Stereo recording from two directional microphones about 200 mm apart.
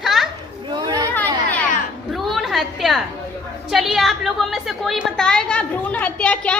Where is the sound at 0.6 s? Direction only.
20° right (ahead or behind).